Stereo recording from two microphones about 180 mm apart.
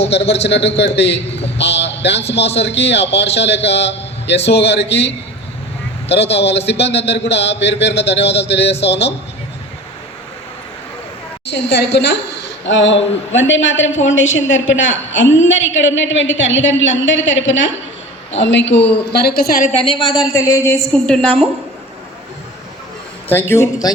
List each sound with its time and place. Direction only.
0.0 s a man's voice: 70° left (ahead or behind)
11.4 s a woman's voice: 70° left (ahead or behind)
19.9 s a woman's voice: centre (ahead or behind)
23.3 s a man's voice: 10° left (ahead or behind)